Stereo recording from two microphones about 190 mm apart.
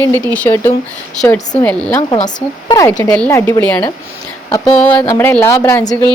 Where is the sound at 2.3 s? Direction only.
20° left (ahead or behind).